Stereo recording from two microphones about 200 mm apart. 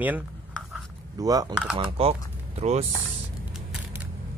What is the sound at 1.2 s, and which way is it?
Speech, 20° right (ahead or behind).